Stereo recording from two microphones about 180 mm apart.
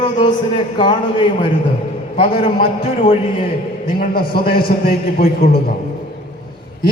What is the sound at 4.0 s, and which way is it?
A man's voice, 55° left (ahead or behind).